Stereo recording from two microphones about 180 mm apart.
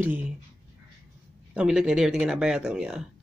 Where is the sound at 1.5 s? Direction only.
5° right (ahead or behind).